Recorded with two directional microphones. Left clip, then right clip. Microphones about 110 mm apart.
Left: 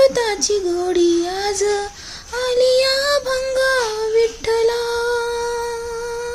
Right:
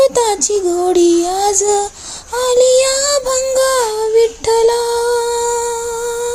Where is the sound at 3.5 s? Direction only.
25° right (ahead or behind).